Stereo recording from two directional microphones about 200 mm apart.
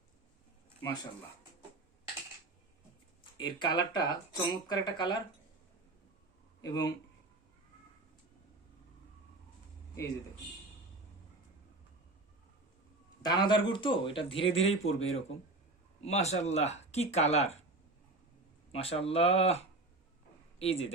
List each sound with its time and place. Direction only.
3.3 s speech: 20° left (ahead or behind)
6.6 s speech: 20° left (ahead or behind)
13.2 s speech: 20° left (ahead or behind)
18.7 s a man's voice: 30° left (ahead or behind)